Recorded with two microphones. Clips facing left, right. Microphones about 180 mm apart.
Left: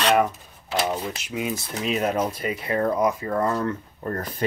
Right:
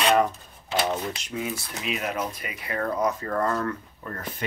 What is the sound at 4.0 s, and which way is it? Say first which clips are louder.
Speech: left 11 dB; 40° left (ahead or behind).